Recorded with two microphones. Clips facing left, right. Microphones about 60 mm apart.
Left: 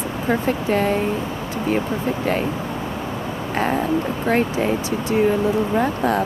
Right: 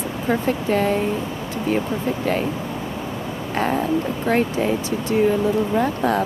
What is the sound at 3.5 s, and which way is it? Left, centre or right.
Speech, centre.